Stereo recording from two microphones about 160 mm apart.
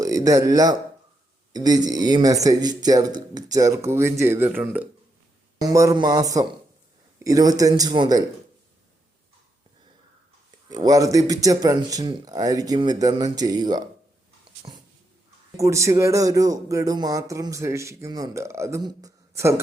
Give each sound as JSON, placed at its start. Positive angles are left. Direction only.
{"t": 0.0, "sound": "speech", "side_deg": -20}
{"t": 5.5, "sound": "speech", "side_deg": -20}
{"t": 10.7, "sound": "speech", "side_deg": -25}
{"t": 15.5, "sound": "speech", "side_deg": -20}